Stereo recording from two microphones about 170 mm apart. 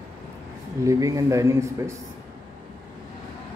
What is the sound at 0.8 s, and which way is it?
Speech, 20° right (ahead or behind).